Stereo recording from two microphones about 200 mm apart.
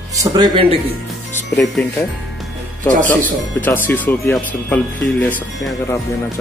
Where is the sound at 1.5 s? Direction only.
10° left (ahead or behind).